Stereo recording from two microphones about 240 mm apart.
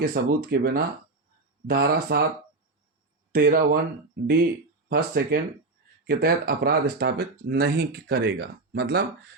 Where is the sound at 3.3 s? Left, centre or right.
Right.